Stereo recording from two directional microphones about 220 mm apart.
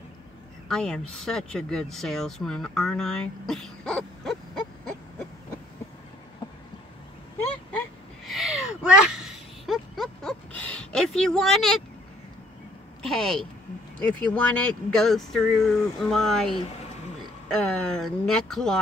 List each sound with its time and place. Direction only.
0.7 s speech: centre (ahead or behind)
8.3 s a sound: centre (ahead or behind)
13.0 s speech: centre (ahead or behind)
14.5 s speech: 5° left (ahead or behind)
16.5 s speech: 25° left (ahead or behind)
17.5 s speech: 5° left (ahead or behind)